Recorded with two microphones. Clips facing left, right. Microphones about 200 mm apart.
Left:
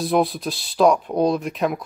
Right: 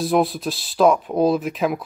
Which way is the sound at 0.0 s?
Centre (ahead or behind).